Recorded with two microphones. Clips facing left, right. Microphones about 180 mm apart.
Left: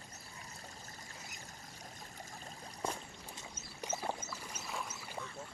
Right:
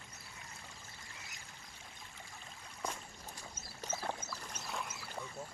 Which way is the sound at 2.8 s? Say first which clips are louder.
Left 3 dB; 30° left (ahead or behind).